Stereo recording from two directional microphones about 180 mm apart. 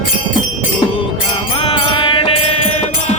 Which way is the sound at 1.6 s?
30° left (ahead or behind).